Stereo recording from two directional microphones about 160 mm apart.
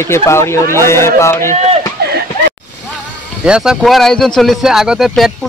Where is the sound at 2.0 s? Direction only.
90° right.